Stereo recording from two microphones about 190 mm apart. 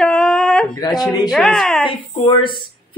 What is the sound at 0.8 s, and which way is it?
Speech, 20° left (ahead or behind).